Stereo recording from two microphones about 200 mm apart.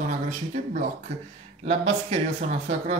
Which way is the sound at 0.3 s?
35° right (ahead or behind).